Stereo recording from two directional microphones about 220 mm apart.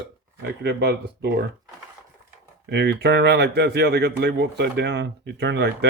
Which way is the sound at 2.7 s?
50° right (ahead or behind).